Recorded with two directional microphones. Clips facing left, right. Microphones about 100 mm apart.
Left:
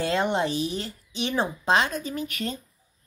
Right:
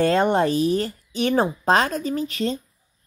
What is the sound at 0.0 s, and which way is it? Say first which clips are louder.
Speech: right 6 dB; 45° right (ahead or behind).